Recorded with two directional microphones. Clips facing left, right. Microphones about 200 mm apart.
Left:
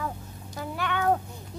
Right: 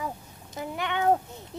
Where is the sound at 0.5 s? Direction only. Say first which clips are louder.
Even; 20° right (ahead or behind).